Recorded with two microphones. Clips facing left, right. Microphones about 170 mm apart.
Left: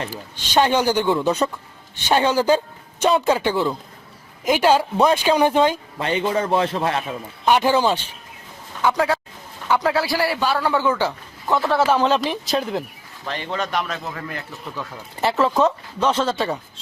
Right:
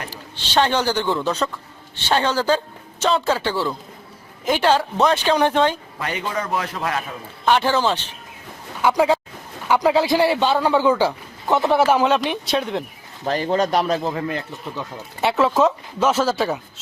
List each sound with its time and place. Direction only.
0.3 s speech: 10° left (ahead or behind)
6.0 s a man's voice: 25° left (ahead or behind)
7.4 s speech: 15° left (ahead or behind)
8.8 s a man's voice: 15° right (ahead or behind)
12.0 s speech: centre (ahead or behind)
13.2 s speech: 40° right (ahead or behind)
15.2 s speech: centre (ahead or behind)